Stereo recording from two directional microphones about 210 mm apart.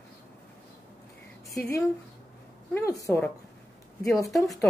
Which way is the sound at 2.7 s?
15° left (ahead or behind).